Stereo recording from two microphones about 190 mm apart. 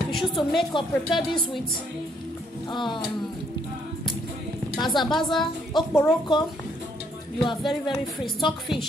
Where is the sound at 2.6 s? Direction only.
25° left (ahead or behind).